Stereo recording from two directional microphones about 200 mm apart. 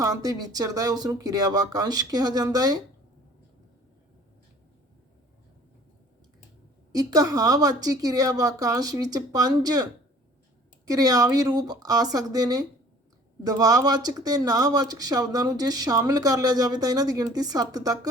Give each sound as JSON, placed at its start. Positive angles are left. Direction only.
{"t": 0.0, "sound": "speech", "side_deg": -20}
{"t": 6.9, "sound": "speech", "side_deg": -20}